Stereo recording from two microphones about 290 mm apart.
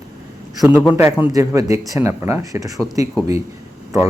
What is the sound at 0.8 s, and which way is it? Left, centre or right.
Speech, centre.